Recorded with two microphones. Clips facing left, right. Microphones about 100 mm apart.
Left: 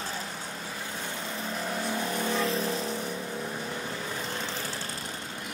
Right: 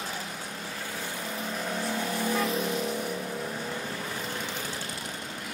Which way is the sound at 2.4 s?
30° left (ahead or behind).